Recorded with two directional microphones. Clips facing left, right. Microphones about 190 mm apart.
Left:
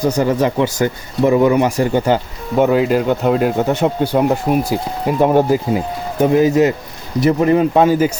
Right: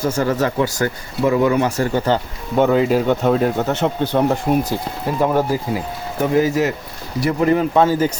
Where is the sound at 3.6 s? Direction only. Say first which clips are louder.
Left 3 dB; 15° left (ahead or behind).